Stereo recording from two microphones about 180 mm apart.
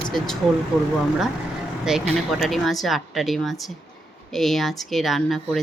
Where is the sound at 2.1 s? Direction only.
Centre (ahead or behind).